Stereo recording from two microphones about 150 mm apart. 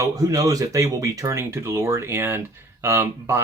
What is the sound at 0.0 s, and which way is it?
Speech, 25° right (ahead or behind).